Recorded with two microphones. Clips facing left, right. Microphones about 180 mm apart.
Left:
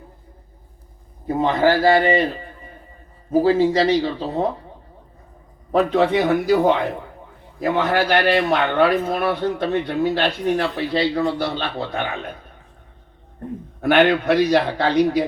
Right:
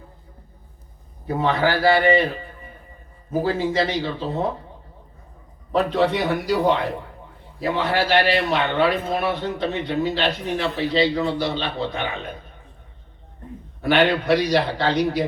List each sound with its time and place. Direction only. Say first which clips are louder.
1.3 s a man's voice: left 3 dB; 20° left (ahead or behind)
3.3 s a man's voice: left 5 dB; 40° left (ahead or behind)
5.7 s a man's voice: left 3 dB; 50° left (ahead or behind)
7.6 s a man's voice: left 3 dB; 50° left (ahead or behind)
13.8 s a man's voice: left 3 dB; 50° left (ahead or behind)